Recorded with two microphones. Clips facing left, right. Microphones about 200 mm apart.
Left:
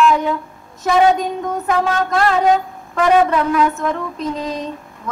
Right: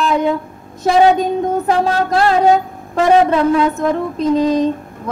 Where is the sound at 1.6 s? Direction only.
35° right (ahead or behind).